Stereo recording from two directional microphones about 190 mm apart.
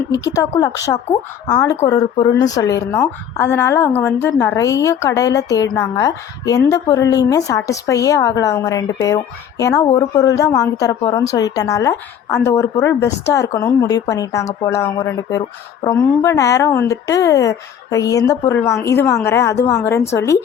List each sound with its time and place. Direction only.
0.3 s a woman's voice: 15° left (ahead or behind)